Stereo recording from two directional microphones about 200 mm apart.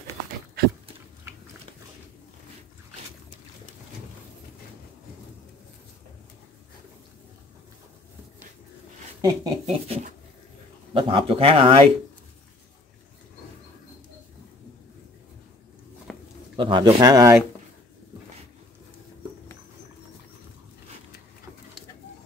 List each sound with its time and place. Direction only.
9.2 s speech: 25° right (ahead or behind)
16.1 s a sound: 5° left (ahead or behind)
16.5 s speech: 25° right (ahead or behind)